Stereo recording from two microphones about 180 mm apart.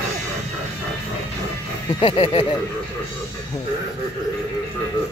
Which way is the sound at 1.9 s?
30° left (ahead or behind).